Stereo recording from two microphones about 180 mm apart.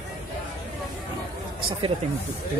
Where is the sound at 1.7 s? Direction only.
30° right (ahead or behind).